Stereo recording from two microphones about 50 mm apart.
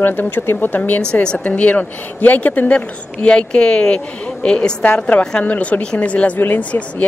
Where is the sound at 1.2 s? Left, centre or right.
Centre.